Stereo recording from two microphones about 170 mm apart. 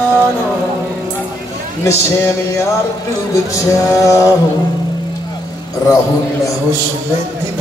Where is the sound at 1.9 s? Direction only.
15° left (ahead or behind).